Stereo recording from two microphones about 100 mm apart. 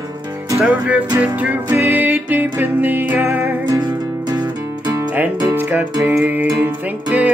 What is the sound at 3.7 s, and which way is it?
Music, 45° right (ahead or behind).